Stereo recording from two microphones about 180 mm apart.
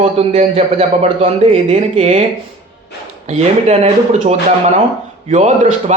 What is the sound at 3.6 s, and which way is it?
Speech, 35° right (ahead or behind).